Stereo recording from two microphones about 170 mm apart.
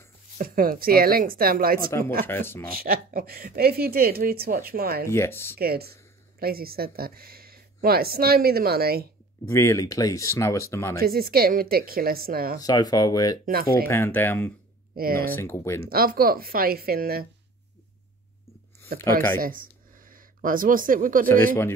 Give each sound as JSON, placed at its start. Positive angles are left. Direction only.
{"t": 0.4, "sound": "speech", "side_deg": -55}
{"t": 1.9, "sound": "speech", "side_deg": 15}
{"t": 2.7, "sound": "speech", "side_deg": -60}
{"t": 5.1, "sound": "speech", "side_deg": 15}
{"t": 5.6, "sound": "speech", "side_deg": -65}
{"t": 9.5, "sound": "speech", "side_deg": 15}
{"t": 11.0, "sound": "speech", "side_deg": -60}
{"t": 12.5, "sound": "speech", "side_deg": 20}
{"t": 13.5, "sound": "speech", "side_deg": -60}
{"t": 13.8, "sound": "speech", "side_deg": 10}
{"t": 15.0, "sound": "speech", "side_deg": -60}
{"t": 15.3, "sound": "speech", "side_deg": 15}
{"t": 15.8, "sound": "speech", "side_deg": -60}
{"t": 19.3, "sound": "speech", "side_deg": -55}